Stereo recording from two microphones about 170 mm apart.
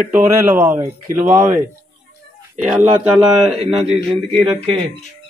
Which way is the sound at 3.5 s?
35° right (ahead or behind).